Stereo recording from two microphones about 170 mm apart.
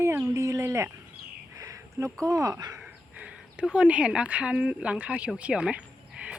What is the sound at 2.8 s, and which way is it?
Speech, 5° right (ahead or behind).